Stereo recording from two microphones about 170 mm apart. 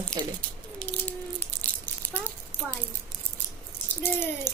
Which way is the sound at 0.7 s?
10° left (ahead or behind).